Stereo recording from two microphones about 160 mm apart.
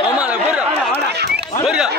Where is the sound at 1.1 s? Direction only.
90° right.